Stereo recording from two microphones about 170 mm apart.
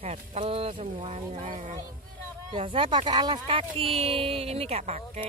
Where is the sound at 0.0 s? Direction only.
40° right (ahead or behind).